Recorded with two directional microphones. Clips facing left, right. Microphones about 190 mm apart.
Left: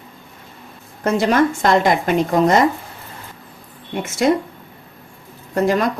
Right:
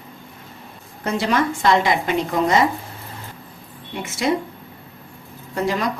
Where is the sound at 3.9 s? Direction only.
45° left (ahead or behind).